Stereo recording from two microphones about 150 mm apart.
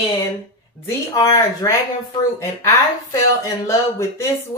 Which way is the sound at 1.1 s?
20° left (ahead or behind).